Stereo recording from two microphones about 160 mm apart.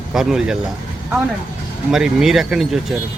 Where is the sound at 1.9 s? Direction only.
5° right (ahead or behind).